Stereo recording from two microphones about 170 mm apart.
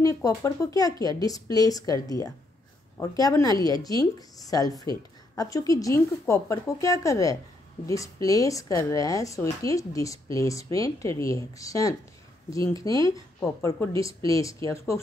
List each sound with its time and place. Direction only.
0.0 s speech: 20° left (ahead or behind)